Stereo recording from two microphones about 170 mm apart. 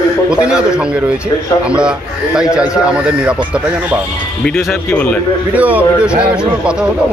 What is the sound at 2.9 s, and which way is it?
A man's voice, 5° right (ahead or behind).